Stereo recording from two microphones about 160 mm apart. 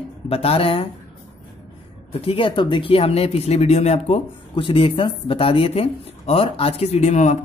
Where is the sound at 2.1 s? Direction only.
35° left (ahead or behind).